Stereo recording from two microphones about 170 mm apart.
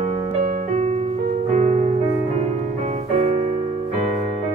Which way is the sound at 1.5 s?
40° right (ahead or behind).